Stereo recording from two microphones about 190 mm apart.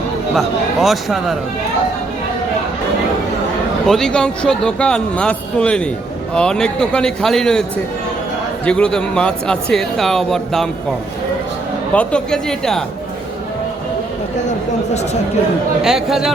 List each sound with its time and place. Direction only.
0.3 s a man's voice: centre (ahead or behind)
3.8 s a man's voice: centre (ahead or behind)
8.6 s a man's voice: 5° left (ahead or behind)
11.9 s a man's voice: 5° left (ahead or behind)
15.8 s a man's voice: centre (ahead or behind)